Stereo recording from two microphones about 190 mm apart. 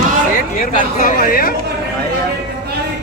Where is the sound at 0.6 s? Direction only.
45° left (ahead or behind).